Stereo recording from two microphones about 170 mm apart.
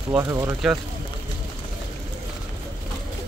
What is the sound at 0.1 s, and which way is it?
Speech, 15° right (ahead or behind).